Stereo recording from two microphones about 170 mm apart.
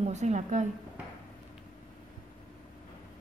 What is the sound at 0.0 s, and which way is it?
Speech, 40° right (ahead or behind).